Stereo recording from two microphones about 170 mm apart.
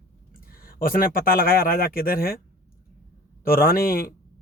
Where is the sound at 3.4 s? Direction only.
60° left (ahead or behind).